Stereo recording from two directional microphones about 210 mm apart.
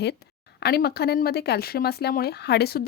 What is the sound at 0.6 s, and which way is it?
Speech, 50° left (ahead or behind).